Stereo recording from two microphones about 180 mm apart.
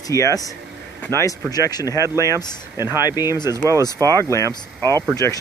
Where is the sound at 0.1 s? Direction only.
20° left (ahead or behind).